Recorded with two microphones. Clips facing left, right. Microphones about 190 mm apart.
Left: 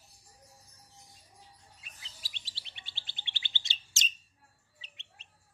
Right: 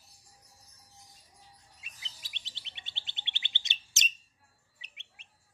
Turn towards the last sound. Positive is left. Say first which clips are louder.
# left 2 dB
turn(degrees=-15)  # may be behind; listen again after turning